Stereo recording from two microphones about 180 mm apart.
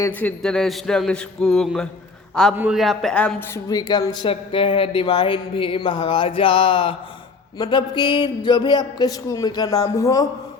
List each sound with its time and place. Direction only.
0.0 s speech: 10° left (ahead or behind)
3.7 s speech: 20° left (ahead or behind)